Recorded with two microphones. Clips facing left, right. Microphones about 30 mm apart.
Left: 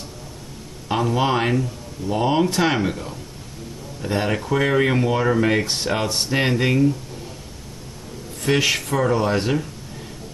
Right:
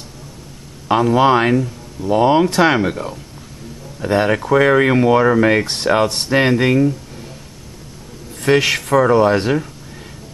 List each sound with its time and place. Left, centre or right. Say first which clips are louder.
0.8 s speech: right 8 dB; right
6.0 s speech: right 3 dB; right
6.3 s speech: right 6 dB; centre
8.5 s speech: right 5 dB; right